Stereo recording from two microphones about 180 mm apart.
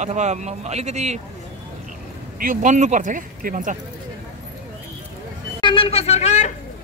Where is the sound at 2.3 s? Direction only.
45° right (ahead or behind).